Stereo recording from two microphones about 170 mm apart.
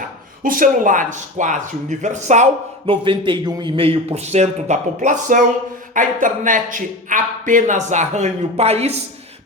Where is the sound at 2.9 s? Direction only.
30° right (ahead or behind).